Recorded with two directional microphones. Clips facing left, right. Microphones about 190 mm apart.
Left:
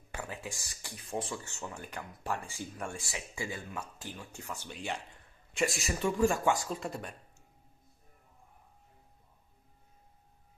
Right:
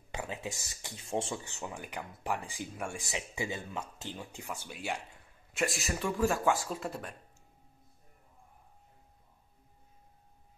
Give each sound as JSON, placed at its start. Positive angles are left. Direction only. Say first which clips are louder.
{"t": 0.1, "sound": "speech", "louder": "right 2 dB", "side_deg": -20}
{"t": 1.4, "sound": "speech", "louder": "right 1 dB", "side_deg": -15}